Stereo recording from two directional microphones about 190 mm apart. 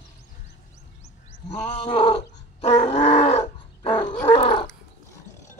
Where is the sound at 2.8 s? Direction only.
35° left (ahead or behind).